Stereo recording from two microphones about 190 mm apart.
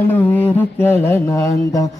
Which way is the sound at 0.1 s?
10° left (ahead or behind).